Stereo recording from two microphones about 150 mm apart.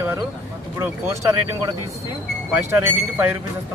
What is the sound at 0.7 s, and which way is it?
Speech, 15° right (ahead or behind).